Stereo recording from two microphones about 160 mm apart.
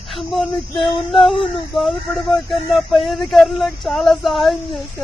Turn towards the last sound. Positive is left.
turn(degrees=0)  # may be behind; listen again after turning